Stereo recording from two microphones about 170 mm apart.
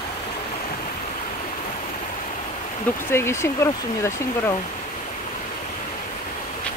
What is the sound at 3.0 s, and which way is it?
Speech, 15° left (ahead or behind).